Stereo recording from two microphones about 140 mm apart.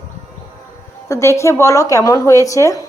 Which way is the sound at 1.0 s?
20° left (ahead or behind).